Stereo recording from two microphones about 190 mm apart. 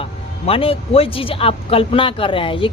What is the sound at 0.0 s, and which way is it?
Speech, 30° left (ahead or behind).